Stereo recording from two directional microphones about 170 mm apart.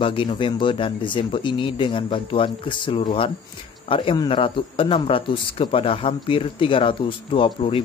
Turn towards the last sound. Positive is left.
turn(degrees=30)  # may be behind; listen again after turning